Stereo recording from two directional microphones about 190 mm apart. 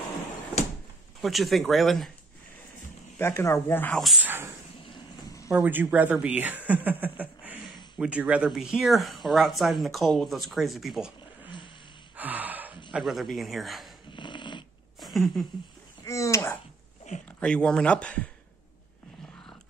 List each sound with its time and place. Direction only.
1.2 s speech: centre (ahead or behind)
3.2 s speech: 15° left (ahead or behind)
4.8 s a sound: 20° left (ahead or behind)
5.5 s speech: 10° right (ahead or behind)
12.2 s gasp: 10° right (ahead or behind)
12.9 s speech: centre (ahead or behind)
14.1 s dog: 25° left (ahead or behind)
15.0 s a sound: centre (ahead or behind)
16.0 s speech: 15° left (ahead or behind)
17.4 s speech: 5° left (ahead or behind)